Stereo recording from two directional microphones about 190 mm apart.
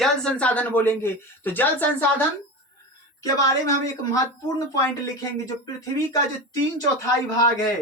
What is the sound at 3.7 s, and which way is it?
Speech, 20° left (ahead or behind).